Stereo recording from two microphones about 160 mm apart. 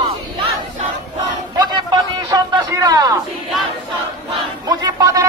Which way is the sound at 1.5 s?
25° right (ahead or behind).